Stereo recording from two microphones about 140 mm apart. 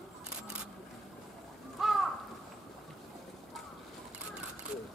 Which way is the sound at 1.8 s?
Centre (ahead or behind).